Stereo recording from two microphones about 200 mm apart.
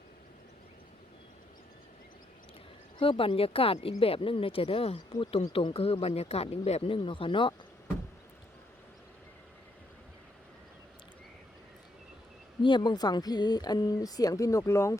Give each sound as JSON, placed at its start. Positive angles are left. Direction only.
{"t": 3.0, "sound": "speech", "side_deg": 25}
{"t": 12.6, "sound": "speech", "side_deg": 20}